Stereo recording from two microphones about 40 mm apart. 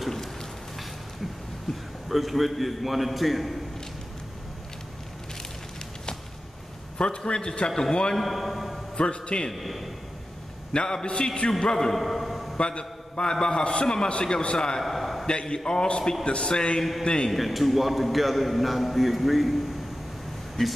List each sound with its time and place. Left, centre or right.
0.0 s rain: centre
1.7 s a sound: centre
2.0 s a man's voice: centre
7.0 s a man's voice: left
8.2 s a man's voice: centre
8.9 s a man's voice: left
9.5 s a man's voice: centre
10.7 s a man's voice: left
12.0 s a sound: centre
12.5 s a man's voice: left
14.8 s a sound: centre
15.2 s a man's voice: left
17.3 s a man's voice: centre
20.6 s a man's voice: centre